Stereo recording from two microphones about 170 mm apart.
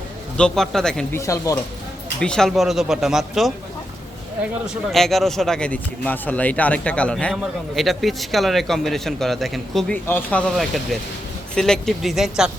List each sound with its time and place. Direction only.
0.3 s speech: 5° left (ahead or behind)
1.1 s a man's voice: 20° left (ahead or behind)
2.2 s speech: 5° left (ahead or behind)
4.6 s a man's voice: centre (ahead or behind)